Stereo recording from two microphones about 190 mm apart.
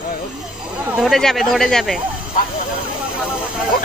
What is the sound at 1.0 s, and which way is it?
Speech, centre (ahead or behind).